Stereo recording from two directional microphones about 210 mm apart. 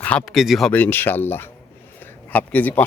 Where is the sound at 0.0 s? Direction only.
5° left (ahead or behind).